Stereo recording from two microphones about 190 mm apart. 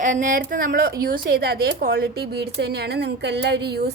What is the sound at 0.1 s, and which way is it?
A woman's voice, 45° right (ahead or behind).